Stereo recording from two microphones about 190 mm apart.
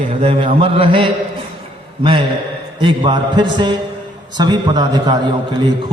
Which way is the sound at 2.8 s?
25° right (ahead or behind).